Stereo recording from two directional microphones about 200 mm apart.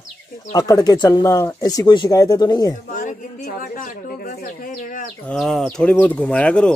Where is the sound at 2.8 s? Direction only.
45° left (ahead or behind).